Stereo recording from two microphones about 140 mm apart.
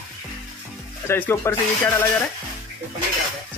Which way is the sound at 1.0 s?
15° left (ahead or behind).